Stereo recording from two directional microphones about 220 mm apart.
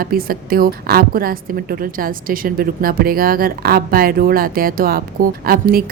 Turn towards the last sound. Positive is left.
turn(degrees=-40)  # may be behind; listen again after turning